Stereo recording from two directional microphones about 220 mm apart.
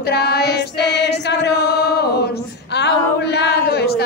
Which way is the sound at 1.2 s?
50° left (ahead or behind).